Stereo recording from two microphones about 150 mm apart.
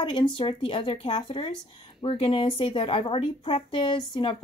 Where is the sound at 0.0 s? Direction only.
35° left (ahead or behind).